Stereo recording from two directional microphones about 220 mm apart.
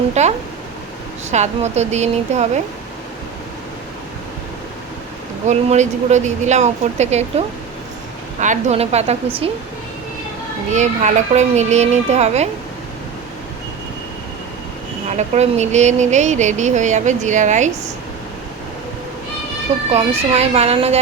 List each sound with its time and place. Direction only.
0.1 s a sound: 30° right (ahead or behind)
1.3 s speech: 30° right (ahead or behind)
5.5 s speech: 30° right (ahead or behind)
10.8 s speech: 30° right (ahead or behind)
15.1 s speech: 30° right (ahead or behind)
19.9 s speech: 30° right (ahead or behind)